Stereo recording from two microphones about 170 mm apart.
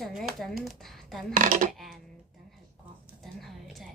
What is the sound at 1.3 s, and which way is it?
Coin, 50° right (ahead or behind).